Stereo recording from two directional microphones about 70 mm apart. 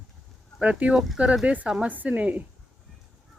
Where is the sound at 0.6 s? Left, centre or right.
Centre.